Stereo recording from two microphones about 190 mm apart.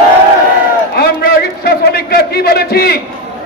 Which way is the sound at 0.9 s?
55° left (ahead or behind).